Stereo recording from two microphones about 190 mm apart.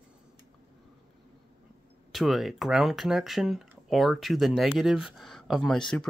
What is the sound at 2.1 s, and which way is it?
Speech, centre (ahead or behind).